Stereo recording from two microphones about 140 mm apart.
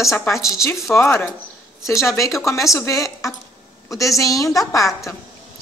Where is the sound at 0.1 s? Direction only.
20° left (ahead or behind).